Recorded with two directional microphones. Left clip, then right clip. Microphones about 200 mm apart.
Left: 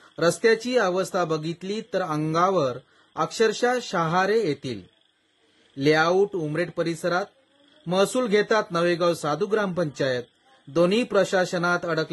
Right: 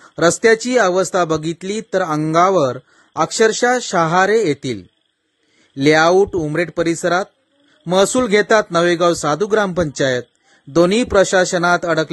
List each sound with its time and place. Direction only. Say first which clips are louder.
0.1 s speech: right 8 dB; 45° right (ahead or behind)
5.8 s speech: right 8 dB; 45° right (ahead or behind)